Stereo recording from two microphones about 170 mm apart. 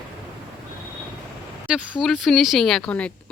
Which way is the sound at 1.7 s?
Centre (ahead or behind).